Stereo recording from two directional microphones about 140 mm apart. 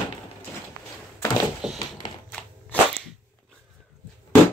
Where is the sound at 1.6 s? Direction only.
5° right (ahead or behind).